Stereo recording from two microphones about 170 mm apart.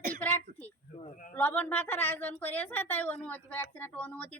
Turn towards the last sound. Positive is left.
turn(degrees=10)  # may be behind; listen again after turning